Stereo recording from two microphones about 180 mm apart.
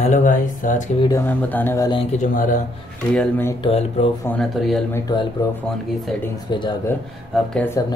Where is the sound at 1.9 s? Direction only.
35° left (ahead or behind).